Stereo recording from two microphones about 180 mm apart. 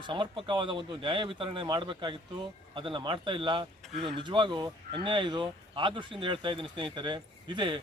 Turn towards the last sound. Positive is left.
turn(degrees=-25)  # may be behind; listen again after turning